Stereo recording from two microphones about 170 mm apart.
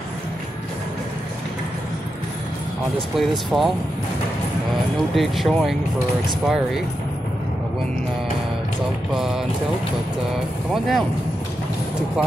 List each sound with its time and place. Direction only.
3.2 s speech: centre (ahead or behind)
5.1 s speech: centre (ahead or behind)
9.1 s speech: centre (ahead or behind)
10.7 s speech: centre (ahead or behind)